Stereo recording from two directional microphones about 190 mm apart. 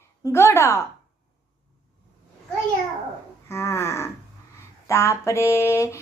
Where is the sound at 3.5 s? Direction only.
15° left (ahead or behind).